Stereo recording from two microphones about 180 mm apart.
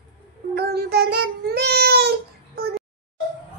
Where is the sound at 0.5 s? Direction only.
65° right (ahead or behind).